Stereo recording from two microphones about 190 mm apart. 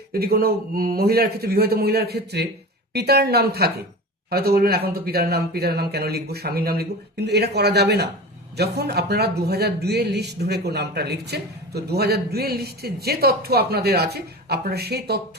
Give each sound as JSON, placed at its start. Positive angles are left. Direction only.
{"t": 0.1, "sound": "a man's voice", "side_deg": -55}